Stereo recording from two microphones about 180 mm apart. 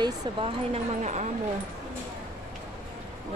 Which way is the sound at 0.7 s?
40° right (ahead or behind).